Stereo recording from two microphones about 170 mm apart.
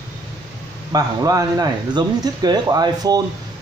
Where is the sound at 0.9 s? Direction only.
20° right (ahead or behind).